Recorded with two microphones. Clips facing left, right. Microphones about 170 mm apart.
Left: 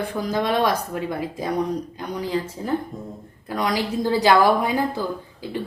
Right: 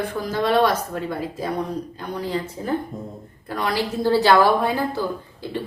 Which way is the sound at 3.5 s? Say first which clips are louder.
Left 1 dB; 15° left (ahead or behind).